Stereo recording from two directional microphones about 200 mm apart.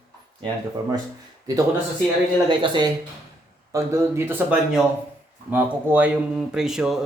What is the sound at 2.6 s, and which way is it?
A man's voice, 20° right (ahead or behind).